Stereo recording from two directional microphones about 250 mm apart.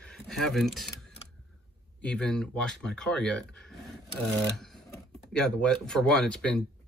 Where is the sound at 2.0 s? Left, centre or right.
Centre.